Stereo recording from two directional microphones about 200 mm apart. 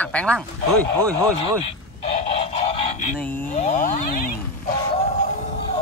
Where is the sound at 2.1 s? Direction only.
30° left (ahead or behind).